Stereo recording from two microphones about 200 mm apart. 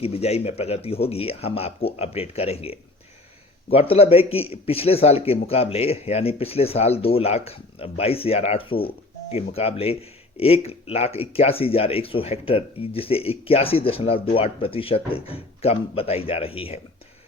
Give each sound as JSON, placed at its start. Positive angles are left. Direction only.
{"t": 0.0, "sound": "speech", "side_deg": 30}